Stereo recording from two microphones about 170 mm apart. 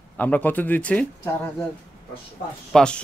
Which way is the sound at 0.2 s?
10° left (ahead or behind).